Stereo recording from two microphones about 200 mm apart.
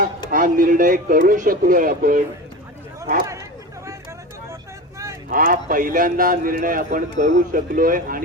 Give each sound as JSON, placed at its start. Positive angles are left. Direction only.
{"t": 0.3, "sound": "a man's voice", "side_deg": -45}
{"t": 5.3, "sound": "a man's voice", "side_deg": -45}